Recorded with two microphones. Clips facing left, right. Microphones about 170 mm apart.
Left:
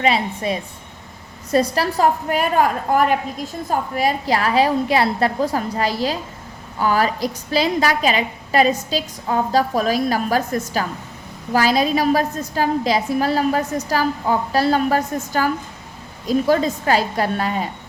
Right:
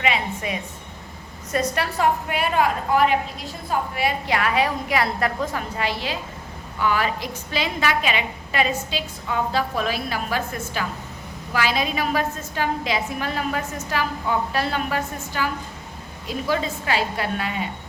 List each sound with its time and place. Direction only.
0.0 s a woman's voice: 35° left (ahead or behind)